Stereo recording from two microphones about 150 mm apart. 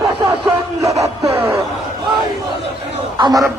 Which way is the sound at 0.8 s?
20° right (ahead or behind).